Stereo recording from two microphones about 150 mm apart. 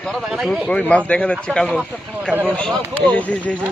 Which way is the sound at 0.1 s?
Centre (ahead or behind).